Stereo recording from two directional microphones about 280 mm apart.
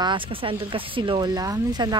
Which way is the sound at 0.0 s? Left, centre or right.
Centre.